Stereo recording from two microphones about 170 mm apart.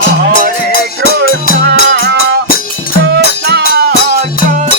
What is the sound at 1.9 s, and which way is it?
Music, 70° right (ahead or behind).